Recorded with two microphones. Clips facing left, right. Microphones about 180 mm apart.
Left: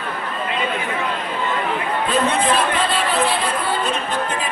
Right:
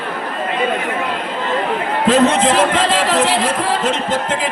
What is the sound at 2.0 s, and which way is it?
A man's voice, 85° right.